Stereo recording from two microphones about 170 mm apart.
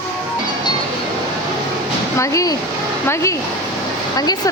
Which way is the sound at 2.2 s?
20° left (ahead or behind).